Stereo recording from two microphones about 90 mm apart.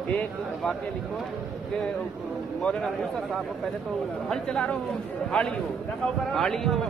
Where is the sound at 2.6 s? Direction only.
5° left (ahead or behind).